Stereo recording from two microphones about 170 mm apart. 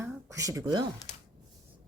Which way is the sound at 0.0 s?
15° right (ahead or behind).